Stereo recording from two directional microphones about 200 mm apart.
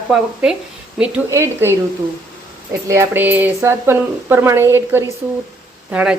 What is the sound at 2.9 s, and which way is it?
Speech, 10° right (ahead or behind).